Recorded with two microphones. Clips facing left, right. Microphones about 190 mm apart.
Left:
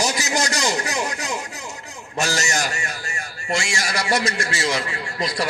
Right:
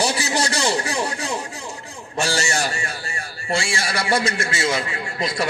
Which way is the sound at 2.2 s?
30° right (ahead or behind).